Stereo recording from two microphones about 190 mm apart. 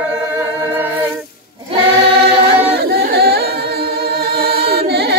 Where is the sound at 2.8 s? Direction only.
60° right (ahead or behind).